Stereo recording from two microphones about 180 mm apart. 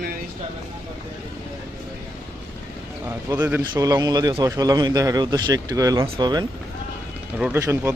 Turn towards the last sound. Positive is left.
turn(degrees=-15)  # may be behind; listen again after turning